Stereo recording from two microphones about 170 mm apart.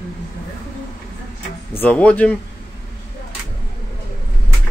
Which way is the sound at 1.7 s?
10° left (ahead or behind).